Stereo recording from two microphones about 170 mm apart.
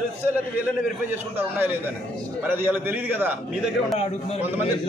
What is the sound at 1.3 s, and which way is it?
A man's voice, 10° right (ahead or behind).